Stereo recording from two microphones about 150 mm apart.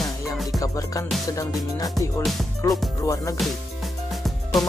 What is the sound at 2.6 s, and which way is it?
Music, 20° left (ahead or behind).